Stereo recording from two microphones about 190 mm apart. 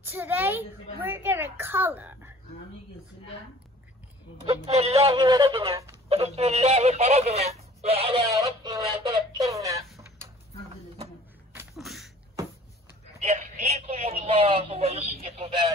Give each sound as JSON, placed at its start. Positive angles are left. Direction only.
{"t": 0.1, "sound": "a woman's voice", "side_deg": -10}
{"t": 4.5, "sound": "speech", "side_deg": -35}
{"t": 8.4, "sound": "a sound", "side_deg": -15}
{"t": 9.4, "sound": "a woman's voice", "side_deg": -15}
{"t": 11.7, "sound": "sneeze", "side_deg": 0}
{"t": 13.2, "sound": "telephone", "side_deg": -35}